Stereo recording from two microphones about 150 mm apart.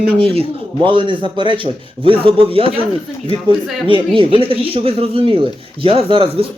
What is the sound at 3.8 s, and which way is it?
A man's voice, 35° right (ahead or behind).